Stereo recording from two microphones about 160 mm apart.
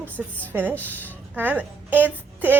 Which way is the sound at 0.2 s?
5° right (ahead or behind).